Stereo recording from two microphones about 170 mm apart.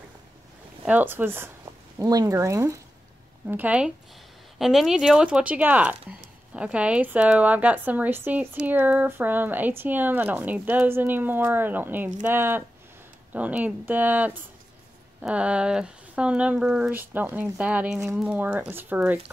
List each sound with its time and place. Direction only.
0.8 s speech: 10° right (ahead or behind)